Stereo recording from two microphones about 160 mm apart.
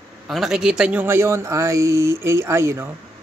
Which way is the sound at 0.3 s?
Centre (ahead or behind).